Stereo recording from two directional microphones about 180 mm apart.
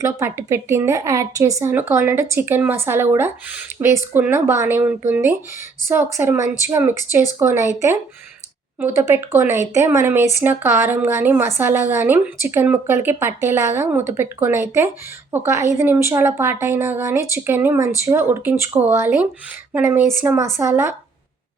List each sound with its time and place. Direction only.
0.0 s speech: 15° right (ahead or behind)